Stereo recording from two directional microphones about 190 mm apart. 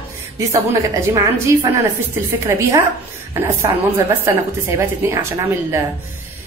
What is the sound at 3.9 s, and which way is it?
A woman's voice, 15° right (ahead or behind).